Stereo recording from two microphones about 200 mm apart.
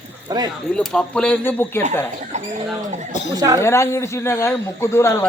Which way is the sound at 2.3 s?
35° right (ahead or behind).